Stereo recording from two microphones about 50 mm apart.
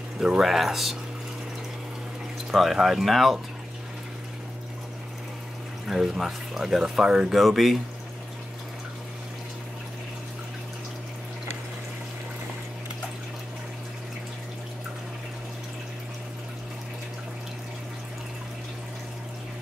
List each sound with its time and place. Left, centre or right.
0.4 s speech: centre
2.5 s speech: centre
5.9 s speech: centre
7.3 s speech: centre